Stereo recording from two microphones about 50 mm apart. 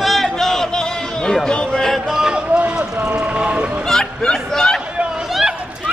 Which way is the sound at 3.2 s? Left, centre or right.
Right.